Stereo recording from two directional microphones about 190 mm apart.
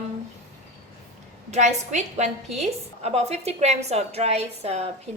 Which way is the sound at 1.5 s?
40° right (ahead or behind).